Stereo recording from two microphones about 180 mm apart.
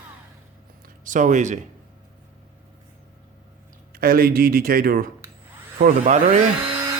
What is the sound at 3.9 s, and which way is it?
Speech, 55° right (ahead or behind).